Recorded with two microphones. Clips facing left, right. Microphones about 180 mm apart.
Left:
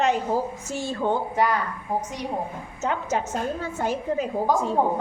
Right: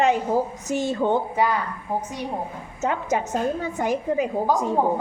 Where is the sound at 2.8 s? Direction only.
15° right (ahead or behind).